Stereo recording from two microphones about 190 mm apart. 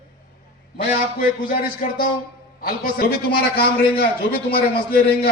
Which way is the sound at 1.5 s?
50° left (ahead or behind).